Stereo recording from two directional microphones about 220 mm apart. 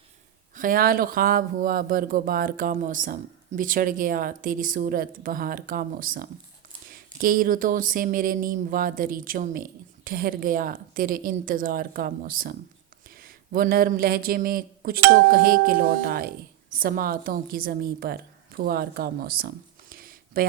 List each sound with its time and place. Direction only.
0.5 s speech: 40° right (ahead or behind)